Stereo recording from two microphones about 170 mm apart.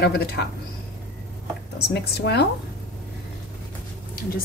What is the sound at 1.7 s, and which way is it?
Speech, 75° left (ahead or behind).